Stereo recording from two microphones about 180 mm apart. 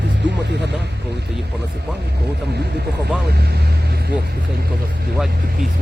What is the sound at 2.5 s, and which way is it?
Speech, 65° right (ahead or behind).